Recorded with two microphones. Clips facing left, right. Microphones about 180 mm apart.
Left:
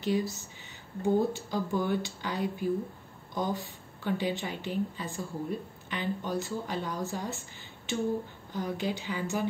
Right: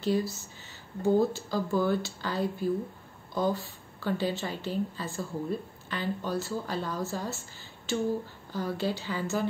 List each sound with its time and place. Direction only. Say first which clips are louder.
0.0 s a woman's voice: right 1 dB; 15° left (ahead or behind)